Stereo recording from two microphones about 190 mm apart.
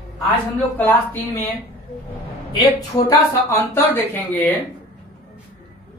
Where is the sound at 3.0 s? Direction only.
20° left (ahead or behind).